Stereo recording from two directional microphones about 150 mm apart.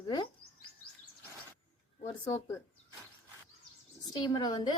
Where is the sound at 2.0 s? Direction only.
25° left (ahead or behind).